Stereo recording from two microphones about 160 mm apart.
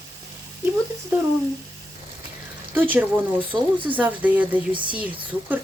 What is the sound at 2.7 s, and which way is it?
Speech, 10° right (ahead or behind).